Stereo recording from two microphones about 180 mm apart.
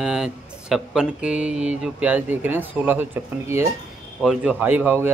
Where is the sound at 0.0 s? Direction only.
5° right (ahead or behind).